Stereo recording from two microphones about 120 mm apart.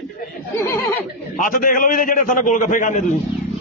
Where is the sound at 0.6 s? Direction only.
20° left (ahead or behind).